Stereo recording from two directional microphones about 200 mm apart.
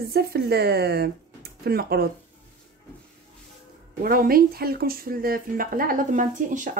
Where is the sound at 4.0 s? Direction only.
45° right (ahead or behind).